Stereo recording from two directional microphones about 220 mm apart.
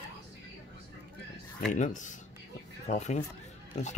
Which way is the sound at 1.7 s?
35° left (ahead or behind).